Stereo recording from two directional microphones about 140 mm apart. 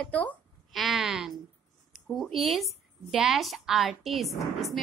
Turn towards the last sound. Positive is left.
turn(degrees=0)  # may be behind; listen again after turning